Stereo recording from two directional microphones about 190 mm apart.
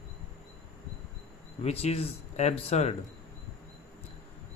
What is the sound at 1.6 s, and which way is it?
Speech, 35° left (ahead or behind).